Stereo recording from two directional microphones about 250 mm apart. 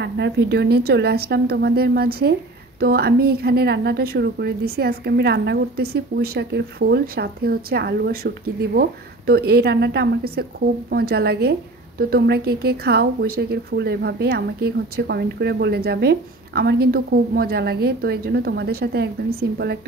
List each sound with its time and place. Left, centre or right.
0.0 s a woman's voice: right